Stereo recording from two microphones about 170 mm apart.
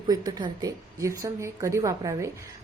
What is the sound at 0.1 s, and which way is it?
A woman's voice, 25° right (ahead or behind).